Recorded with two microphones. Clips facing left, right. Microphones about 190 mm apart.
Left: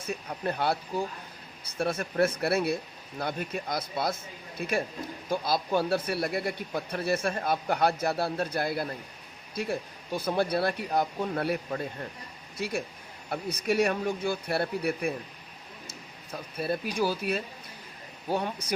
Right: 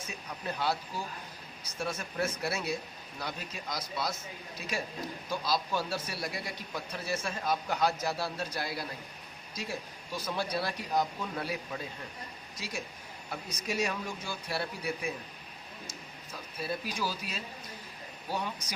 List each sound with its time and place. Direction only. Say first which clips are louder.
0.1 s a man's voice: left 8 dB; 55° left (ahead or behind)